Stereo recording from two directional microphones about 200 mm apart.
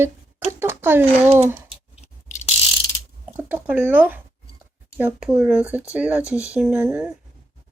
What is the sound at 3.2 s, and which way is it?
A child's voice, 10° right (ahead or behind).